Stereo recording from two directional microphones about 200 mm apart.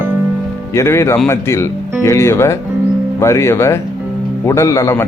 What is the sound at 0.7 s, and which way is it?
Speech, 15° left (ahead or behind).